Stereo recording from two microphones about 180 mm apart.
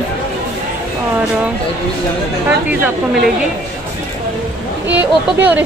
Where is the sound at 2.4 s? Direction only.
10° right (ahead or behind).